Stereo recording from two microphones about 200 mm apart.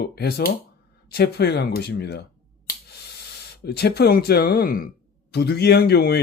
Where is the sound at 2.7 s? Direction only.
55° left (ahead or behind).